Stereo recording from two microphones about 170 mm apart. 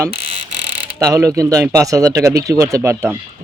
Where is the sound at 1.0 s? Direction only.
15° right (ahead or behind).